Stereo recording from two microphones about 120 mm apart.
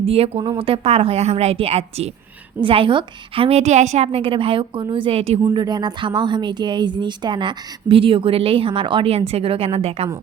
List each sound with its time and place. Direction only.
0.0 s speech: 55° right (ahead or behind)
2.6 s speech: 45° right (ahead or behind)
5.5 s speech: 35° right (ahead or behind); by 10.1 s 55° right (ahead or behind)